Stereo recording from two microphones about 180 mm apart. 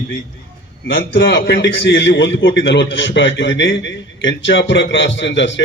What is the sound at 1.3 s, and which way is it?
A man's voice, 75° left (ahead or behind).